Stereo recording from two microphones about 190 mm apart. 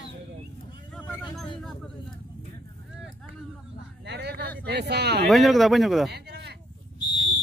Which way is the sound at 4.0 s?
60° right (ahead or behind).